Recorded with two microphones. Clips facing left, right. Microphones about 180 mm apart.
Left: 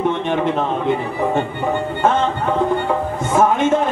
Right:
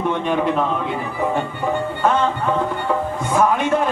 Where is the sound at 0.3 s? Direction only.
25° left (ahead or behind).